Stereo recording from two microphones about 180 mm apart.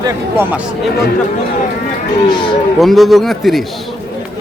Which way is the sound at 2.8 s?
Centre (ahead or behind).